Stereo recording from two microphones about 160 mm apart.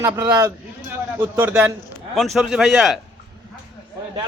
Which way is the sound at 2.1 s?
Centre (ahead or behind).